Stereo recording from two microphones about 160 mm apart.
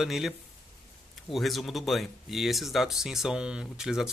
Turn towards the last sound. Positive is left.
turn(degrees=-5)  # may be behind; listen again after turning